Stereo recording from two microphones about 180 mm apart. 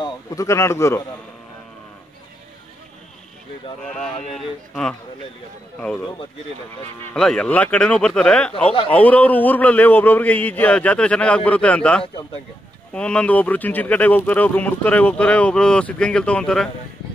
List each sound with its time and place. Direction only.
0.0 s a man's voice: 20° left (ahead or behind)
3.8 s speech: 5° left (ahead or behind)
7.2 s speech: 5° left (ahead or behind)